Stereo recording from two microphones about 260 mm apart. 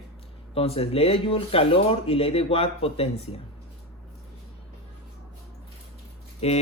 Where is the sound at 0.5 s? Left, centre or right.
Left.